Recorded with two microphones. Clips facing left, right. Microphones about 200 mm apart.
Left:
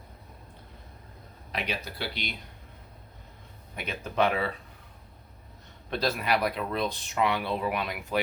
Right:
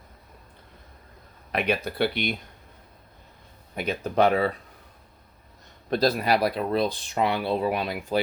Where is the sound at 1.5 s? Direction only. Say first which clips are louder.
Right 8 dB; 55° right (ahead or behind).